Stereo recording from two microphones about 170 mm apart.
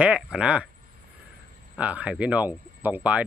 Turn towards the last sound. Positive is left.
turn(degrees=-10)  # may be behind; listen again after turning